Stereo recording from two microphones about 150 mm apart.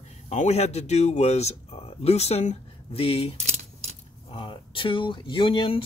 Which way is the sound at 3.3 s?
50° right (ahead or behind).